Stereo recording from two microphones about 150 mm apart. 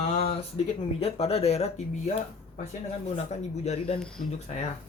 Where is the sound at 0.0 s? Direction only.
45° left (ahead or behind).